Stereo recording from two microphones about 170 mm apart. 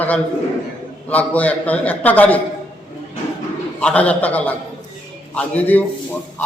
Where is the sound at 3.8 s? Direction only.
10° left (ahead or behind).